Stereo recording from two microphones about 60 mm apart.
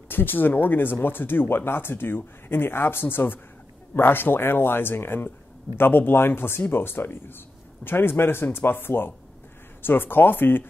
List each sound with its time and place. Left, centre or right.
0.1 s speech: left